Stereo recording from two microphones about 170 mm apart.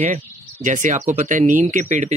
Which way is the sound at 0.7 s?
50° right (ahead or behind).